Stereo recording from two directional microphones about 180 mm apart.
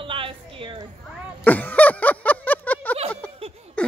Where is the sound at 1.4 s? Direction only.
10° left (ahead or behind).